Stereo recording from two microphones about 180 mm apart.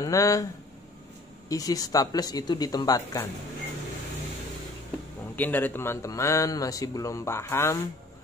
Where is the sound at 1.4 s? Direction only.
20° left (ahead or behind).